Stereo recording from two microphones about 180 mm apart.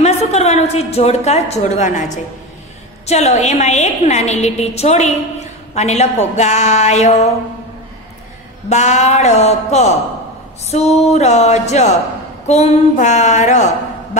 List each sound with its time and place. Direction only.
0.0 s a woman's voice: 35° left (ahead or behind)
3.1 s a woman's voice: 40° left (ahead or behind)
8.6 s a woman's voice: 40° left (ahead or behind)